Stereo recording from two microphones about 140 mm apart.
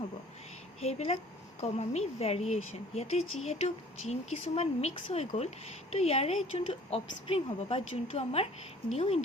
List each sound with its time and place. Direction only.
0.8 s a woman's voice: 45° left (ahead or behind)